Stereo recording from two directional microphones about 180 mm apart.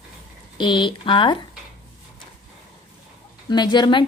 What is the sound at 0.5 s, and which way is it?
Speech, 25° left (ahead or behind).